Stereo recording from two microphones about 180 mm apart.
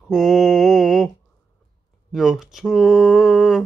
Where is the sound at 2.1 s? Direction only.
Centre (ahead or behind).